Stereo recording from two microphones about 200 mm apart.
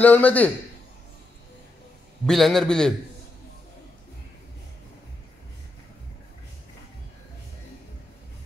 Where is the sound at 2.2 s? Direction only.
Centre (ahead or behind).